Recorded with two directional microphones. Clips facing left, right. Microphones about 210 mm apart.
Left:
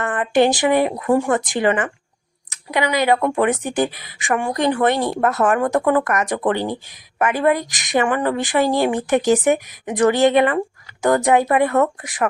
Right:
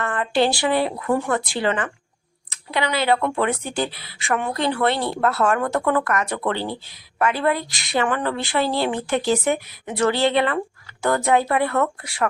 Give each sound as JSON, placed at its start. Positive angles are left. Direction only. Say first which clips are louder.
{"t": 0.0, "sound": "a woman's voice", "louder": "left 4 dB", "side_deg": 15}